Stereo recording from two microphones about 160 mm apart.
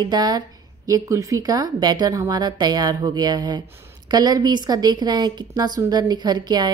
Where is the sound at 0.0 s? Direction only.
25° right (ahead or behind).